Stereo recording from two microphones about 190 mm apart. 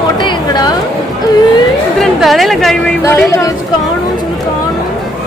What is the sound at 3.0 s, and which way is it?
Speech, 15° left (ahead or behind).